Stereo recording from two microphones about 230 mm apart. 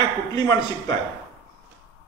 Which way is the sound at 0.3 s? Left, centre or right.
Centre.